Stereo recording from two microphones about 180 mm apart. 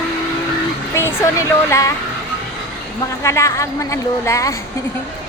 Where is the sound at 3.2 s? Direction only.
15° left (ahead or behind).